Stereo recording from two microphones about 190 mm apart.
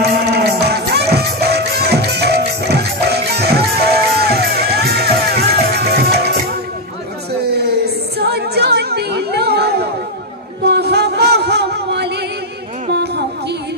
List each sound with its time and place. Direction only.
0.0 s music: 60° right (ahead or behind)
7.3 s a sound: 60° right (ahead or behind)
10.6 s music: 60° right (ahead or behind)